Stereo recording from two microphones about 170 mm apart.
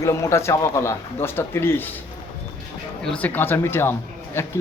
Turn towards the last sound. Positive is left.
turn(degrees=15)  # may be behind; listen again after turning